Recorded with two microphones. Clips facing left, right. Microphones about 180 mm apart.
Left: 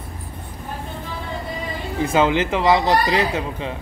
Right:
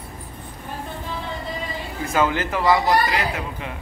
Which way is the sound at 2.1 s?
20° left (ahead or behind).